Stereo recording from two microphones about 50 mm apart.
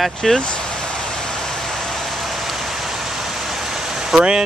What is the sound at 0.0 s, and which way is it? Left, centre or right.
Speech, centre.